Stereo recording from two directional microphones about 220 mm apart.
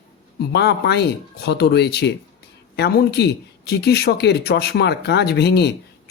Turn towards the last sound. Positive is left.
turn(degrees=50)  # may be behind; listen again after turning